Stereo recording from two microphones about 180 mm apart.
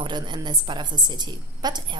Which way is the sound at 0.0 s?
25° right (ahead or behind).